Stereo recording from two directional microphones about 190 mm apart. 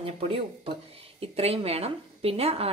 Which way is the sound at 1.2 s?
30° right (ahead or behind).